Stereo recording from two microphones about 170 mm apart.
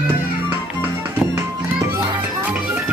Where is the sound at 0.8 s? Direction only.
15° right (ahead or behind).